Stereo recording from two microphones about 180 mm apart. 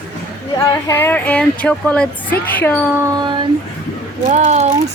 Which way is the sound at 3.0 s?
20° right (ahead or behind).